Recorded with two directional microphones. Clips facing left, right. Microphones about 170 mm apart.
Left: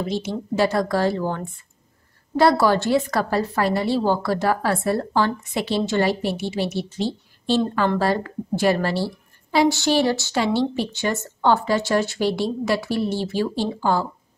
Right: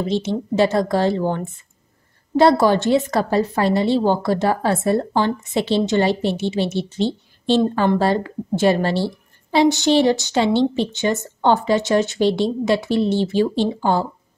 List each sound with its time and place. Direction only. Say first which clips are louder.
0.1 s a woman's voice: right 4 dB; 25° right (ahead or behind)